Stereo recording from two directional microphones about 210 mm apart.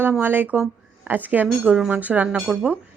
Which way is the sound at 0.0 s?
10° right (ahead or behind).